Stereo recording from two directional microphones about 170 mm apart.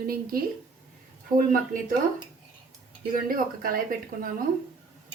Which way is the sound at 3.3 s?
55° right (ahead or behind).